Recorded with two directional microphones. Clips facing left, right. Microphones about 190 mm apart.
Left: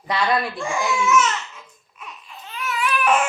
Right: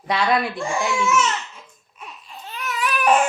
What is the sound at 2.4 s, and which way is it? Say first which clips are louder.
Baby cry: left 1 dB; 40° right (ahead or behind).